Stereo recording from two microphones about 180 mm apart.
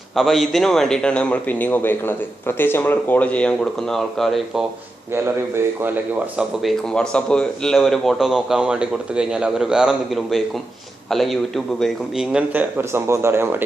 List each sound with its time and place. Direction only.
0.2 s a man's voice: centre (ahead or behind)
5.1 s a man's voice: 10° right (ahead or behind)